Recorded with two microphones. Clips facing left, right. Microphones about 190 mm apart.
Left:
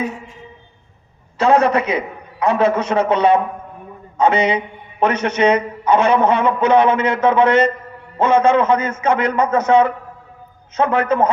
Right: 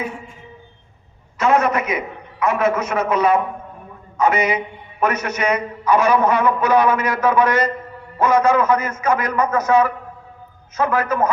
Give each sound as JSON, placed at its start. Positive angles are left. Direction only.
{"t": 1.4, "sound": "a man's voice", "side_deg": 30}